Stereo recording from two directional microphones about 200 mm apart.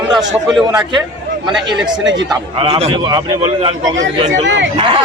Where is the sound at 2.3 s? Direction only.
25° right (ahead or behind).